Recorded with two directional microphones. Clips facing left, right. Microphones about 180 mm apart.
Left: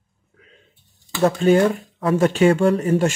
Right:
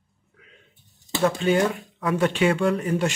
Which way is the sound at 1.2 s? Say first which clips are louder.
Left 5 dB; 40° left (ahead or behind).